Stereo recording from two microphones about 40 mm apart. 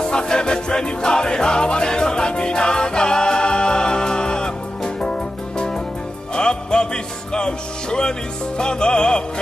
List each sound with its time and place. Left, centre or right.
0.0 s music: left
6.3 s music: left